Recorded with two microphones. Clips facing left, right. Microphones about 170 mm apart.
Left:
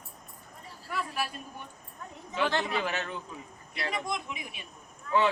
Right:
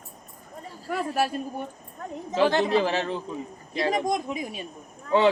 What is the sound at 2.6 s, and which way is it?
Speech, 35° right (ahead or behind).